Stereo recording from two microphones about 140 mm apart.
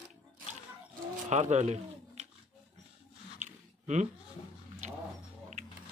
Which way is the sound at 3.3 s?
60° right (ahead or behind).